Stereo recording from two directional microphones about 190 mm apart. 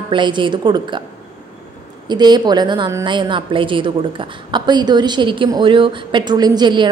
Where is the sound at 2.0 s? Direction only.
20° right (ahead or behind).